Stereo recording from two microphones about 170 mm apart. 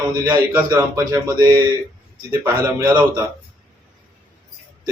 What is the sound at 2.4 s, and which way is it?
Speech, 15° right (ahead or behind).